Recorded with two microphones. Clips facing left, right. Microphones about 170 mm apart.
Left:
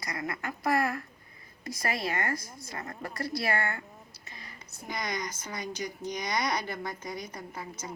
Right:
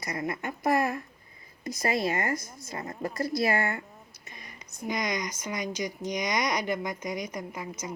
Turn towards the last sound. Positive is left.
turn(degrees=-15)  # may be behind; listen again after turning